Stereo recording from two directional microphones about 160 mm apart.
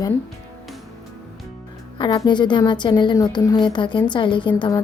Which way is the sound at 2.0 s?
30° left (ahead or behind).